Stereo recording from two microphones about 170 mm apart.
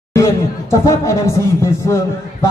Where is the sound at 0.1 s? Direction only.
15° left (ahead or behind).